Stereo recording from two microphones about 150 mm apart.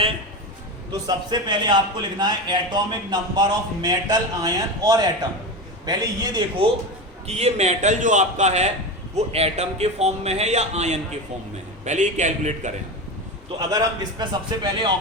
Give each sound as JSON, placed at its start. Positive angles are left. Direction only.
{"t": 1.0, "sound": "a man's voice", "side_deg": -30}
{"t": 7.3, "sound": "a man's voice", "side_deg": -45}
{"t": 13.6, "sound": "a man's voice", "side_deg": -25}